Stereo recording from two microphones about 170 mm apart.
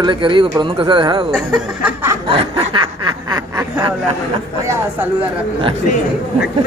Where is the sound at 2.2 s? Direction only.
30° right (ahead or behind).